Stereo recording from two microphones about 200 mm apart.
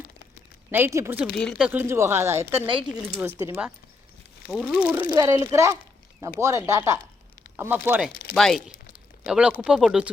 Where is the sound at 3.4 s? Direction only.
15° right (ahead or behind).